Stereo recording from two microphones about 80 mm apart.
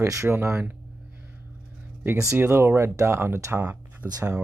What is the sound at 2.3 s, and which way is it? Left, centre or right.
Speech, right.